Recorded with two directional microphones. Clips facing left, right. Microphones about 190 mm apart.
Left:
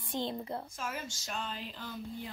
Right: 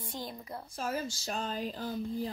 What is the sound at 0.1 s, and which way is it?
Speech, 25° left (ahead or behind).